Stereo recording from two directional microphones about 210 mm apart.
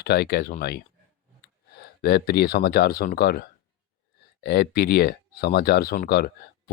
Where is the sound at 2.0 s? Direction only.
50° left (ahead or behind).